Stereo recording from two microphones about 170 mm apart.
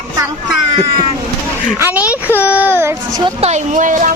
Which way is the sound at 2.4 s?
10° right (ahead or behind).